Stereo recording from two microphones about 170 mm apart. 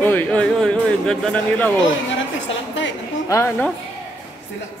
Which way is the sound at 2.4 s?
90° left.